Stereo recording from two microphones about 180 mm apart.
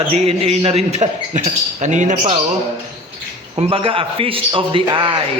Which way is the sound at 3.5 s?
30° right (ahead or behind).